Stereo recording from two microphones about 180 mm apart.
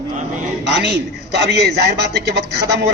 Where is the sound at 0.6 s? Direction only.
70° right (ahead or behind).